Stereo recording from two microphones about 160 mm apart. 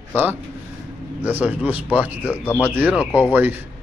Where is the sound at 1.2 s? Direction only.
10° right (ahead or behind).